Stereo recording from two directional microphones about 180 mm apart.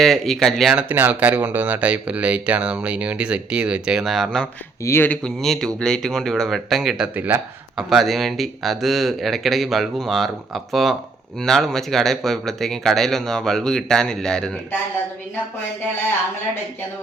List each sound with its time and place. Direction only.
0.0 s speech: centre (ahead or behind)
4.8 s speech: 15° left (ahead or behind)